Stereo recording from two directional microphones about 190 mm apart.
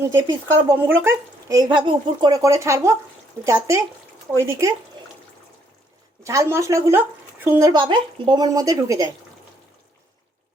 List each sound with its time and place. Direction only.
0.1 s speech: 15° right (ahead or behind)
6.2 s speech: 15° right (ahead or behind)